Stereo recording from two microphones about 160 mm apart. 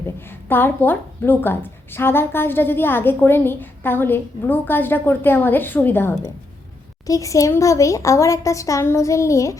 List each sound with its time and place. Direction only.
0.2 s a woman's voice: 15° left (ahead or behind)